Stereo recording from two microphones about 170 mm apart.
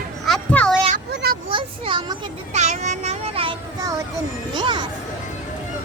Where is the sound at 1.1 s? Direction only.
75° right (ahead or behind).